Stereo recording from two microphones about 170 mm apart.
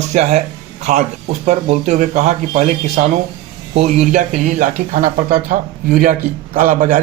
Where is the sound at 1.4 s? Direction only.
45° right (ahead or behind).